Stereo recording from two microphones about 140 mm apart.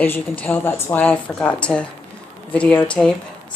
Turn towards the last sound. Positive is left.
turn(degrees=5)  # may be behind; listen again after turning